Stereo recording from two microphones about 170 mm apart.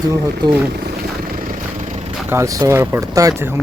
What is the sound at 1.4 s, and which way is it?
Vehicle, 50° right (ahead or behind).